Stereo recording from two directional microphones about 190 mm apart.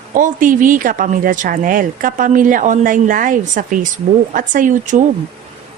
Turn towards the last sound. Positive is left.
turn(degrees=-40)  # may be behind; listen again after turning